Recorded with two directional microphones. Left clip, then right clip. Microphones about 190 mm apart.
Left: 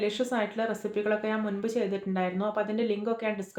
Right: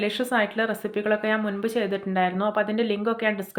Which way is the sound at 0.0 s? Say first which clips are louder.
Right 5 dB; 25° right (ahead or behind).